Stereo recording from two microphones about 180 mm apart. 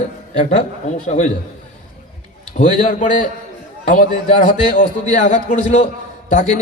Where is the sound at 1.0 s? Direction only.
40° left (ahead or behind).